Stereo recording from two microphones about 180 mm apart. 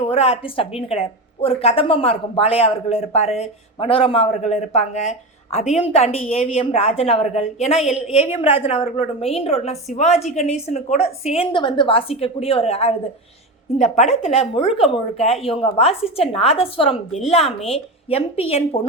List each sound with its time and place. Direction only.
0.0 s speech: 30° left (ahead or behind)